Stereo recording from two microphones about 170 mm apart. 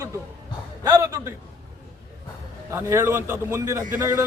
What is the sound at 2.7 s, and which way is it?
A man's voice, 15° right (ahead or behind).